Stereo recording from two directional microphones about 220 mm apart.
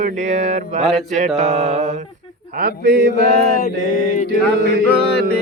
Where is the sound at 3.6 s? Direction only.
40° left (ahead or behind).